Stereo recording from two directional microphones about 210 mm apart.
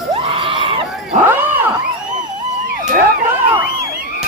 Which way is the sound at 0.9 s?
Centre (ahead or behind).